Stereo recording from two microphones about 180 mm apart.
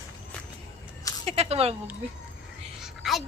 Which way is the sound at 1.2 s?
35° right (ahead or behind).